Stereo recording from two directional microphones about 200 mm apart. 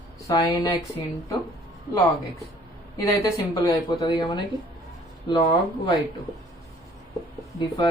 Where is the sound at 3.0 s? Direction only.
15° left (ahead or behind).